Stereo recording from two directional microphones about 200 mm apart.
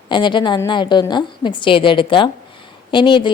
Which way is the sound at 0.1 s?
25° left (ahead or behind).